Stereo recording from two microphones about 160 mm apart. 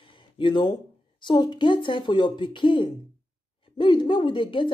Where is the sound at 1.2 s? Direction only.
25° left (ahead or behind).